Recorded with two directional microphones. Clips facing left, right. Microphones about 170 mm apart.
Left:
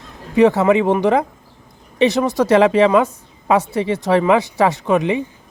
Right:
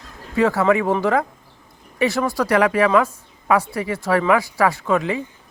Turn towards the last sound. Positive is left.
turn(degrees=20)  # may be behind; listen again after turning